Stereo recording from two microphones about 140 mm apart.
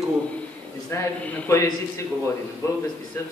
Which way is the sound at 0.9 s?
20° left (ahead or behind).